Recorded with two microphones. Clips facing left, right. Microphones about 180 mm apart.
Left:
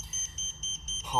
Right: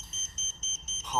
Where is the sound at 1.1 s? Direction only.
15° left (ahead or behind).